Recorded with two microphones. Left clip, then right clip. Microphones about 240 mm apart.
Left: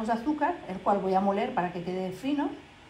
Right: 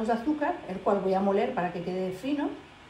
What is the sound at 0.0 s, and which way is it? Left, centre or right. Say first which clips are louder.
A woman's voice: even; centre.